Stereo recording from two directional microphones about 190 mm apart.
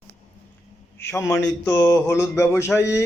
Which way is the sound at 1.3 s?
15° left (ahead or behind).